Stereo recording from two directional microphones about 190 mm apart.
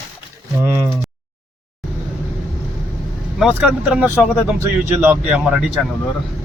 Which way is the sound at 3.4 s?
5° right (ahead or behind).